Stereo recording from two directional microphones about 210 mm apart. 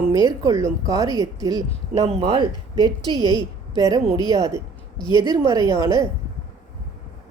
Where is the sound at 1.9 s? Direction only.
30° right (ahead or behind).